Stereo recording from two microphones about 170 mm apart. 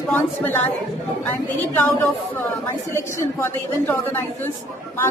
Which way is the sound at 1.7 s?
10° left (ahead or behind).